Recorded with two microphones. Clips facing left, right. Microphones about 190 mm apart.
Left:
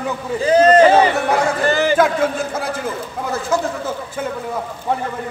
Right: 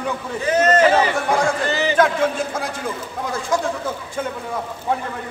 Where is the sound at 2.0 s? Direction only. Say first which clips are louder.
Left 1 dB; 5° left (ahead or behind).